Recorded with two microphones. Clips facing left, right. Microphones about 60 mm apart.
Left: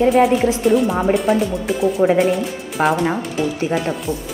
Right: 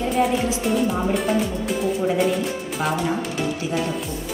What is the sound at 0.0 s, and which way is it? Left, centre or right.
Speech, left.